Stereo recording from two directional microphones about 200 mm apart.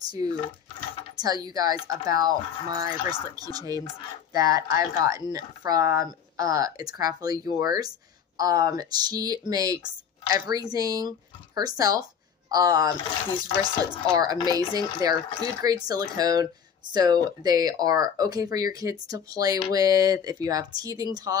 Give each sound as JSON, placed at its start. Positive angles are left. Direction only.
{"t": 1.1, "sound": "speech", "side_deg": -20}